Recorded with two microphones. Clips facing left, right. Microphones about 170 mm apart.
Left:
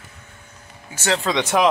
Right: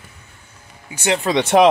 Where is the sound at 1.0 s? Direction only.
20° right (ahead or behind).